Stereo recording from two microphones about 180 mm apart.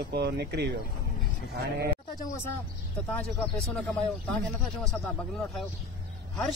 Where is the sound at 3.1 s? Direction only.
5° left (ahead or behind).